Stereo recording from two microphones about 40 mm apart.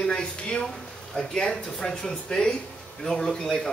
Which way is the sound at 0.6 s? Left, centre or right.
Centre.